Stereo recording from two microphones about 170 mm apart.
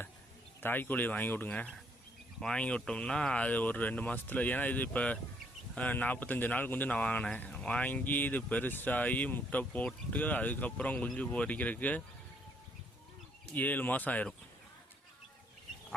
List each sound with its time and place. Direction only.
0.6 s speech: 10° left (ahead or behind)
13.5 s speech: 10° left (ahead or behind)